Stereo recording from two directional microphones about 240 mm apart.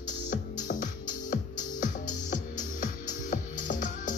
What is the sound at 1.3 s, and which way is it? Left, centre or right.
Music, left.